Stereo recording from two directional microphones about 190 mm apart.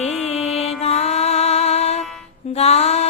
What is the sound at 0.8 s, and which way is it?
Music, 35° left (ahead or behind).